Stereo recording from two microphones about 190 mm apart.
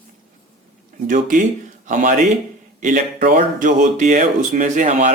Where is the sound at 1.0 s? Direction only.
45° right (ahead or behind).